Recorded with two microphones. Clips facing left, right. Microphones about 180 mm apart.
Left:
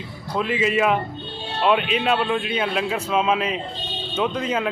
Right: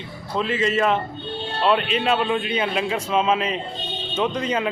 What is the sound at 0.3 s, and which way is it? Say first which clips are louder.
A man's voice: even; 5° left (ahead or behind).